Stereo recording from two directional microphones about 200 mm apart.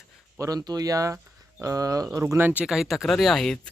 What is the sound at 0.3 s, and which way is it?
Speech, 15° right (ahead or behind).